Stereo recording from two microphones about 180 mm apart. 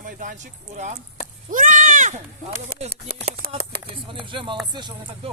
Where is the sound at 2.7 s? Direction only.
55° right (ahead or behind).